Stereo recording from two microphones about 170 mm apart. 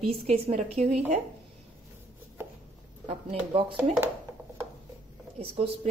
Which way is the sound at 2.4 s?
15° right (ahead or behind).